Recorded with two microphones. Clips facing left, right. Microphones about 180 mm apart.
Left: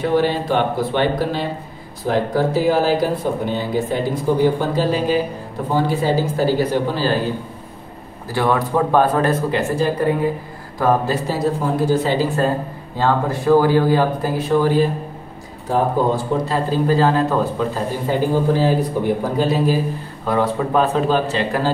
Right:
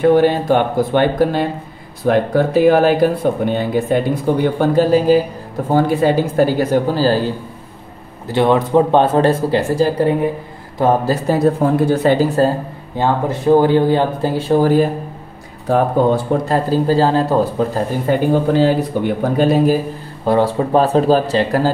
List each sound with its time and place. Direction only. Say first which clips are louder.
0.0 s speech: right 6 dB; 50° right (ahead or behind)
2.0 s speech: right 4 dB; 60° right (ahead or behind)
4.9 s speech: right 9 dB; 40° right (ahead or behind)
5.7 s speech: right 5 dB; 55° right (ahead or behind)
8.3 s speech: right 5 dB; 20° right (ahead or behind)
11.2 s speech: right 6 dB; 55° right (ahead or behind)
12.9 s speech: right 2 dB; 20° right (ahead or behind)
14.6 s speech: right 4 dB; 45° right (ahead or behind)
15.7 s speech: right 4 dB; 60° right (ahead or behind)
16.8 s speech: right 2 dB; 30° right (ahead or behind)
18.1 s speech: right 3 dB; 65° right (ahead or behind); by 19.8 s 50° right (ahead or behind)
20.2 s speech: right 4 dB; 30° right (ahead or behind)